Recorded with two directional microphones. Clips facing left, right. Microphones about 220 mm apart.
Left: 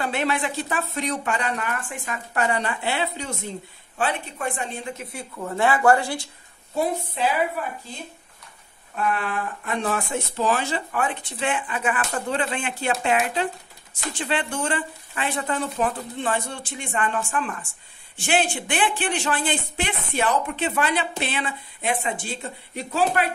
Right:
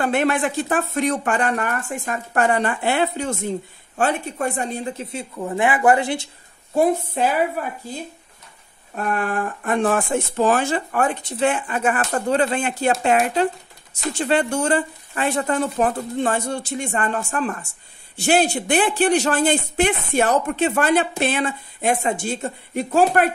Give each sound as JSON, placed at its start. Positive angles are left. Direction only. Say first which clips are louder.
{"t": 0.0, "sound": "a woman's voice", "louder": "right 5 dB", "side_deg": -50}
{"t": 6.7, "sound": "speech", "louder": "right 7 dB", "side_deg": -50}
{"t": 8.9, "sound": "speech", "louder": "right 3 dB", "side_deg": -45}
{"t": 14.1, "sound": "speech", "louder": "right 7 dB", "side_deg": -45}